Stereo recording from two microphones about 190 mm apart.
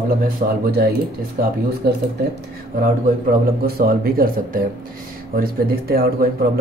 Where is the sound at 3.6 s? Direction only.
50° right (ahead or behind).